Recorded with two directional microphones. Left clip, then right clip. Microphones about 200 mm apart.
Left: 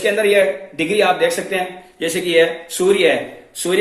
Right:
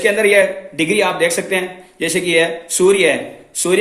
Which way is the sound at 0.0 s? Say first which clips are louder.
Right 2 dB; 50° right (ahead or behind).